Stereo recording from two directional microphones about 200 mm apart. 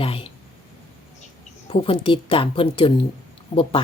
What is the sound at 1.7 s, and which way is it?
Speech, 25° left (ahead or behind).